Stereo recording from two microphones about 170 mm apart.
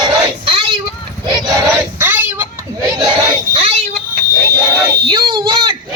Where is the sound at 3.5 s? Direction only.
35° right (ahead or behind).